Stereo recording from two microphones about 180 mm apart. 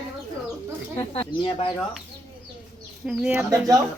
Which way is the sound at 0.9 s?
30° left (ahead or behind).